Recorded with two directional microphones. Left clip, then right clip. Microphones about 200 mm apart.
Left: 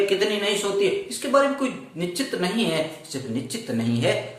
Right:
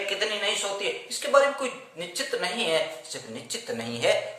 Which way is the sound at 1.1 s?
15° right (ahead or behind).